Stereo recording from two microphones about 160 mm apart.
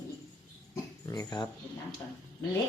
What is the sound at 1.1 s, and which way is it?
Speech, 25° left (ahead or behind).